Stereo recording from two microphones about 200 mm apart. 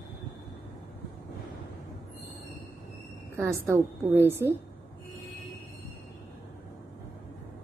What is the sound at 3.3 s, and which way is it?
A woman's voice, 10° right (ahead or behind).